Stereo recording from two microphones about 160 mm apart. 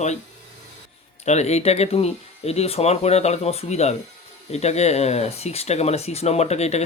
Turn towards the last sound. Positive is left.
turn(degrees=40)  # may be behind; listen again after turning